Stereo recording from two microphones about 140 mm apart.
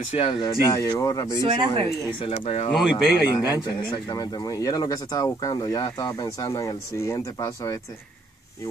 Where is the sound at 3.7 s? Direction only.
30° left (ahead or behind).